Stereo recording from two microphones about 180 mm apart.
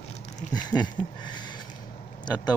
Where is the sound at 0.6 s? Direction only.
25° left (ahead or behind).